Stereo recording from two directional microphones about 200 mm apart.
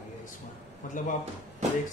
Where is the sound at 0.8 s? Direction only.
40° left (ahead or behind).